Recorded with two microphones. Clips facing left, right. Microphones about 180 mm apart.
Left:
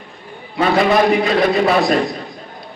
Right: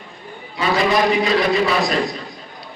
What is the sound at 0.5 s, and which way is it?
A man's voice, 55° left (ahead or behind).